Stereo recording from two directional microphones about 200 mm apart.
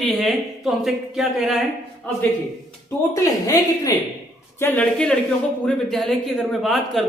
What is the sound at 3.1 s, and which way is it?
A woman's voice, 15° left (ahead or behind).